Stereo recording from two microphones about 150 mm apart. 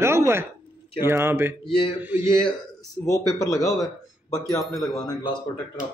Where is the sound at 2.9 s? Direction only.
25° left (ahead or behind).